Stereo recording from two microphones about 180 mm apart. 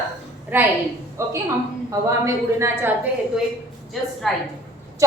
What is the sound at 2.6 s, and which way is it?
Speech, 10° right (ahead or behind).